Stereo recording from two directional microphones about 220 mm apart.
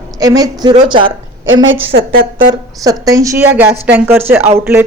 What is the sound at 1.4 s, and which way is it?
Speech, 60° right (ahead or behind).